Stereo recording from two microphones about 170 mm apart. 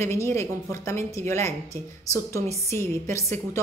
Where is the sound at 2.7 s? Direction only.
15° left (ahead or behind).